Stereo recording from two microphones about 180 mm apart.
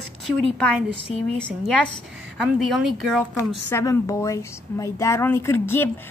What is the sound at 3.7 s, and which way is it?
A woman's voice, 15° left (ahead or behind).